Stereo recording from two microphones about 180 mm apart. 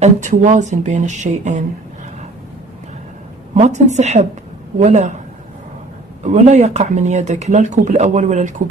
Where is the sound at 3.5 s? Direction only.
40° right (ahead or behind).